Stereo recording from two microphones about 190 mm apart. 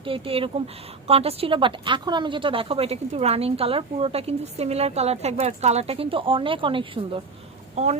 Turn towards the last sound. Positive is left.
turn(degrees=-35)  # may be behind; listen again after turning